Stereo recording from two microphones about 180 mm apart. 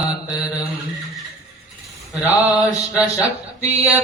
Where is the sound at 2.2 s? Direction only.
10° right (ahead or behind).